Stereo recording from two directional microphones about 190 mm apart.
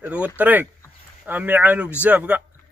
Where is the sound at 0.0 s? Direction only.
5° right (ahead or behind).